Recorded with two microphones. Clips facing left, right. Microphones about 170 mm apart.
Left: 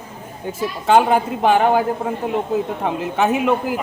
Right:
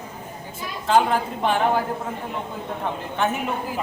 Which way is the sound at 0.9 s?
70° left (ahead or behind).